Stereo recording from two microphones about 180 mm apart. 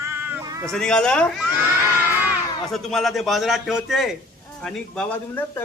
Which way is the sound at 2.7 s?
Centre (ahead or behind).